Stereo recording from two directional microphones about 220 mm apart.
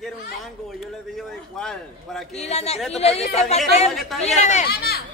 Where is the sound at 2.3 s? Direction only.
30° left (ahead or behind).